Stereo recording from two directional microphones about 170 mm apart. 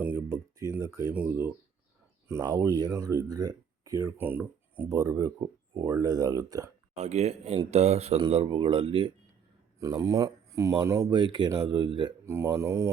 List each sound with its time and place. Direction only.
0.0 s speech: 10° right (ahead or behind)
2.2 s speech: 20° right (ahead or behind)
6.9 s speech: 40° right (ahead or behind)
9.8 s speech: 20° right (ahead or behind)
11.1 s speech: 25° right (ahead or behind)
12.2 s speech: 15° right (ahead or behind)